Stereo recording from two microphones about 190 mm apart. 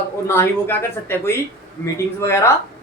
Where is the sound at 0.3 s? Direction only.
15° left (ahead or behind).